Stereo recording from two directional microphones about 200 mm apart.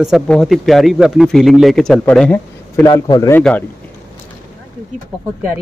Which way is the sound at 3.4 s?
5° left (ahead or behind).